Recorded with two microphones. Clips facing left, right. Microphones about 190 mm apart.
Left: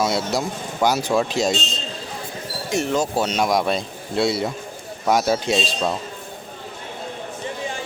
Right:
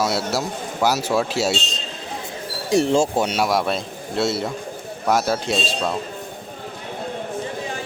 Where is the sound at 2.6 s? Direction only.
30° right (ahead or behind).